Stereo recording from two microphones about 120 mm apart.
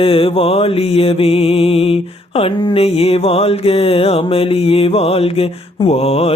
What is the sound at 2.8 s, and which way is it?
Mantra, 55° left (ahead or behind).